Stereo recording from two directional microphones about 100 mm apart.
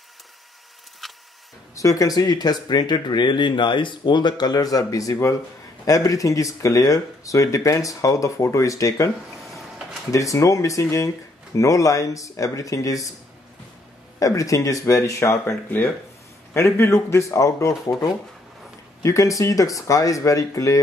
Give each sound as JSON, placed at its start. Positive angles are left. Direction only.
{"t": 1.0, "sound": "printer", "side_deg": 0}
{"t": 1.8, "sound": "speech", "side_deg": 35}
{"t": 10.1, "sound": "speech", "side_deg": 30}
{"t": 14.2, "sound": "speech", "side_deg": 35}